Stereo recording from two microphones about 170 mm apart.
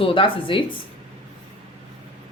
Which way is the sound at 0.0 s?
30° left (ahead or behind).